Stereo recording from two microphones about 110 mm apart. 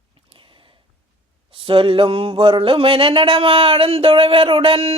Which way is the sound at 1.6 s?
55° right (ahead or behind).